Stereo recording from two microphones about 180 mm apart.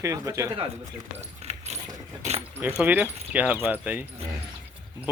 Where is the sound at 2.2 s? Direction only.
40° right (ahead or behind).